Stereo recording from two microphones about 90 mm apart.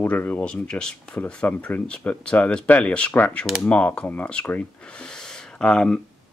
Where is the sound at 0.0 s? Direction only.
20° left (ahead or behind).